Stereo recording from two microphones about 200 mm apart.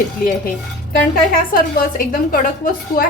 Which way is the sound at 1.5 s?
45° left (ahead or behind).